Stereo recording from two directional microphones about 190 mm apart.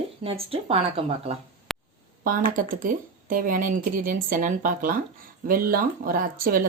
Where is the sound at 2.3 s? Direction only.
45° right (ahead or behind).